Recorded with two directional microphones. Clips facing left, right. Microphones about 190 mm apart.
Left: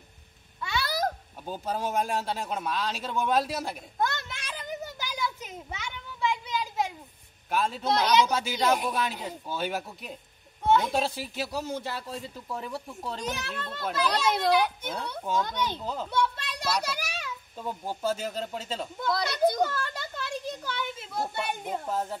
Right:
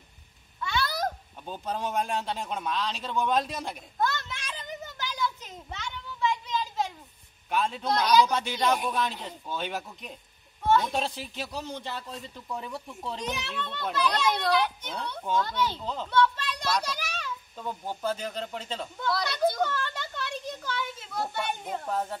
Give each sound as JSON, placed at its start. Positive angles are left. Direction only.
{"t": 0.6, "sound": "a sound", "side_deg": 5}
{"t": 7.4, "sound": "speech", "side_deg": 5}
{"t": 8.0, "sound": "speech", "side_deg": 20}
{"t": 8.3, "sound": "a man's voice", "side_deg": 5}
{"t": 15.8, "sound": "a child's voice", "side_deg": 5}
{"t": 19.0, "sound": "a child's voice", "side_deg": 20}
{"t": 19.7, "sound": "a sound", "side_deg": 40}
{"t": 21.4, "sound": "speech", "side_deg": 10}